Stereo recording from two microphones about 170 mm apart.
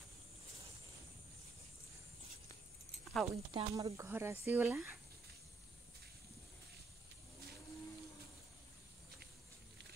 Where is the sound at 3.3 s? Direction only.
30° right (ahead or behind).